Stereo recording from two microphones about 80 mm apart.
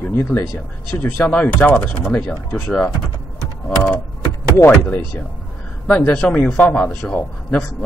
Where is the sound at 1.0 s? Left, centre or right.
Centre.